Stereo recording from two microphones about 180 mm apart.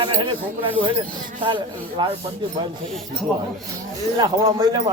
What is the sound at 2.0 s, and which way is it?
Speech, 25° right (ahead or behind).